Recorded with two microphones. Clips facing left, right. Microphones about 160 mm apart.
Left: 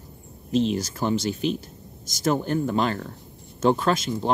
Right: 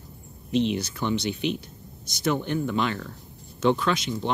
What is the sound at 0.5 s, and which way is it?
Speech, 40° left (ahead or behind).